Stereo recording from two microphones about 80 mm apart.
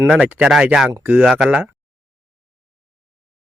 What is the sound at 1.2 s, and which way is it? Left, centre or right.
Speech, centre.